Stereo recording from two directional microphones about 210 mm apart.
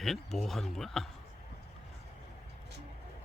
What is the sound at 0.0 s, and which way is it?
Speech, centre (ahead or behind).